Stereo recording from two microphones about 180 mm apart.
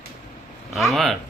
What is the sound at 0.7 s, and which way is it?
Speech, centre (ahead or behind).